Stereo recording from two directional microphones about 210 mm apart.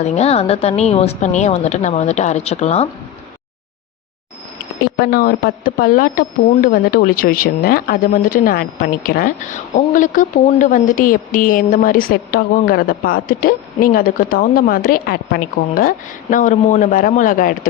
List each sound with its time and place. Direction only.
0.0 s a woman's voice: 30° left (ahead or behind)
4.9 s a woman's voice: 45° left (ahead or behind)